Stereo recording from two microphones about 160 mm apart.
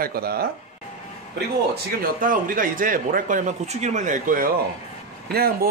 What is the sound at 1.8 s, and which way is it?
Speech, 65° right (ahead or behind).